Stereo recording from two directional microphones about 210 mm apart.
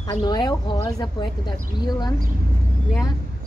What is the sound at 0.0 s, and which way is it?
Speech, 20° left (ahead or behind).